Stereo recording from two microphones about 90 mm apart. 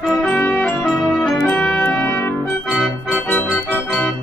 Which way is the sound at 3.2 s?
20° left (ahead or behind).